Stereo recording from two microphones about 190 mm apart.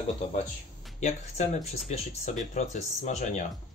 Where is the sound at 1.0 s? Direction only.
40° left (ahead or behind).